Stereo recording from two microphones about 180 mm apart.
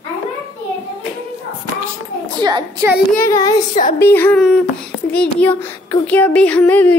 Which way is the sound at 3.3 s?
20° left (ahead or behind).